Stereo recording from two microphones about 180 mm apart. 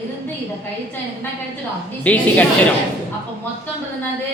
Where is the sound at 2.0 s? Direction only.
10° left (ahead or behind).